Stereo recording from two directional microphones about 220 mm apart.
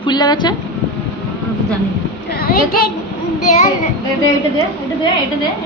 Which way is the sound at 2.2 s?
45° left (ahead or behind).